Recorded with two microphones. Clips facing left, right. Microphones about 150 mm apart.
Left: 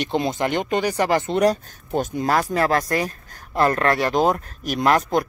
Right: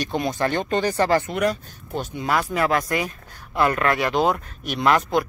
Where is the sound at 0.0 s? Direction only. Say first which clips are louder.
Left 1 dB; 25° left (ahead or behind).